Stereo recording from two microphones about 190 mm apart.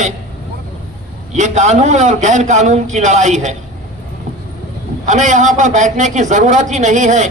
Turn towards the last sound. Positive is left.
turn(degrees=-40)  # may be behind; listen again after turning